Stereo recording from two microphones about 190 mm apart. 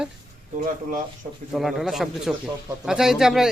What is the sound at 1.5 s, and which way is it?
Speech, centre (ahead or behind).